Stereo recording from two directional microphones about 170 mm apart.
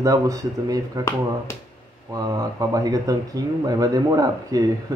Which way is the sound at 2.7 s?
20° right (ahead or behind).